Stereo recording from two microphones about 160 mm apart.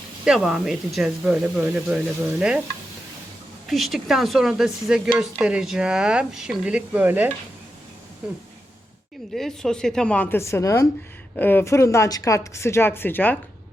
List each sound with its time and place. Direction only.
0.3 s speech: 5° right (ahead or behind)
3.7 s speech: centre (ahead or behind)
8.2 s a sound: 5° right (ahead or behind)
9.3 s speech: 5° left (ahead or behind)